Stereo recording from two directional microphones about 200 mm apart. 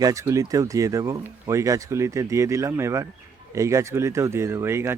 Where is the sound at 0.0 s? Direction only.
15° right (ahead or behind).